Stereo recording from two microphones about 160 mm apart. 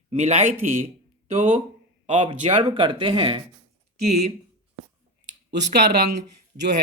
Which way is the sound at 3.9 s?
40° right (ahead or behind).